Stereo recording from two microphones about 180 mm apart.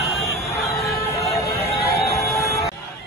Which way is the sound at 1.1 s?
Centre (ahead or behind).